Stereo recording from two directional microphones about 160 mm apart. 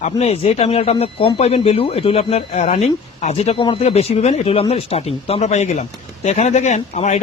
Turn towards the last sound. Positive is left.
turn(degrees=45)  # may be behind; listen again after turning